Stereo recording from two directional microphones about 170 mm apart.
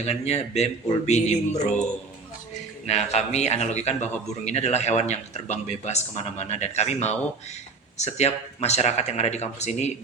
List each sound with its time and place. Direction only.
0.0 s a man's voice: 40° left (ahead or behind)
2.8 s a man's voice: 40° left (ahead or behind)